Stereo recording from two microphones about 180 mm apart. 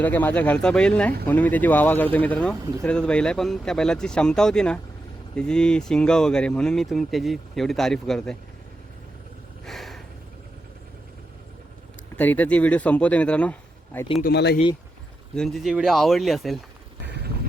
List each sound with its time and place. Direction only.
0.0 s a man's voice: 10° left (ahead or behind)
9.6 s a sound: centre (ahead or behind)
12.1 s a man's voice: 10° left (ahead or behind)
14.2 s speech: 60° left (ahead or behind)
15.4 s speech: centre (ahead or behind)